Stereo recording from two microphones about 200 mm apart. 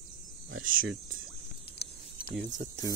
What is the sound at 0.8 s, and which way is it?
Speech, 75° right (ahead or behind).